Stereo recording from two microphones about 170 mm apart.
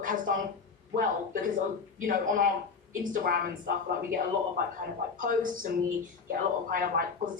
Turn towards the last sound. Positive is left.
turn(degrees=-55)  # may be behind; listen again after turning